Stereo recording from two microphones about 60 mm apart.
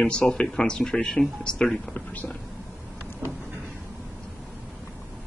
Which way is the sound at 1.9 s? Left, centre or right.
Left.